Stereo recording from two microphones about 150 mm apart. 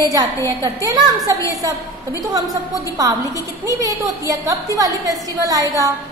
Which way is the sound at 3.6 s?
20° right (ahead or behind).